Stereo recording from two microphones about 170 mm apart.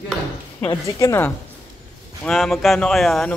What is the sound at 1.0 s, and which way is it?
Speech, 15° left (ahead or behind).